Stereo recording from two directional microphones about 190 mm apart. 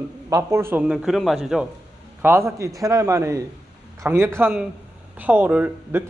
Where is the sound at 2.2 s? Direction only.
15° right (ahead or behind).